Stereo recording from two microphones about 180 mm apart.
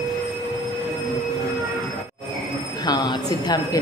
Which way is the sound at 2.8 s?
25° left (ahead or behind).